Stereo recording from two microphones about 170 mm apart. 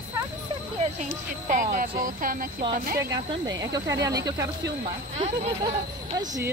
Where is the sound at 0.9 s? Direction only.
50° right (ahead or behind).